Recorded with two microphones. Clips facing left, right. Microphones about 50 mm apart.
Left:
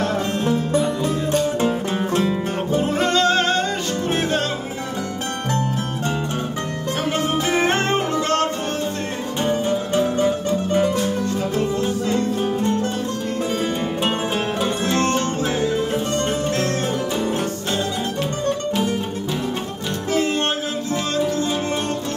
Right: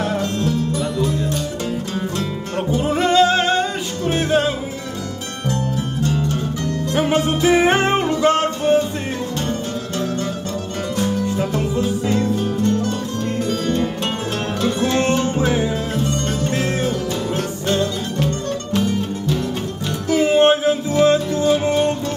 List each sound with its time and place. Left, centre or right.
0.4 s music: left
2.7 s music: centre
7.0 s music: centre
9.5 s music: centre
12.4 s music: left
13.7 s music: centre
15.4 s music: centre
17.6 s music: centre
20.1 s music: centre